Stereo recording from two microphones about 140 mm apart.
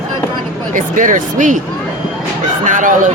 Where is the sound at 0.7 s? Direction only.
70° right (ahead or behind).